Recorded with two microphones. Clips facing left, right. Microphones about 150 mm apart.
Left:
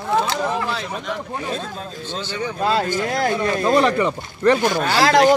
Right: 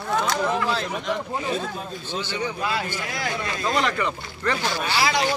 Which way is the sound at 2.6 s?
40° left (ahead or behind).